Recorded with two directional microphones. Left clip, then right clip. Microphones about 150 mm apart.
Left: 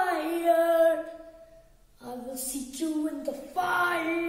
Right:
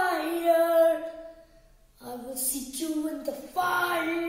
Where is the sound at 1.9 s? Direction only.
Centre (ahead or behind).